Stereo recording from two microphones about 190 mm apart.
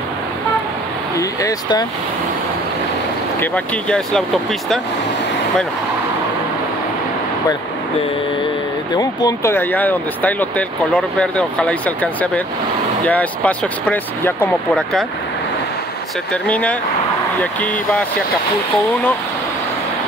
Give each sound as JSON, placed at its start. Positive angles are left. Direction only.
{"t": 1.1, "sound": "speech", "side_deg": 20}
{"t": 3.3, "sound": "speech", "side_deg": 5}
{"t": 8.9, "sound": "speech", "side_deg": 20}
{"t": 16.4, "sound": "speech", "side_deg": 5}